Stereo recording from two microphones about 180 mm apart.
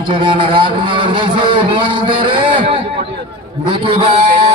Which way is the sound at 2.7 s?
30° right (ahead or behind).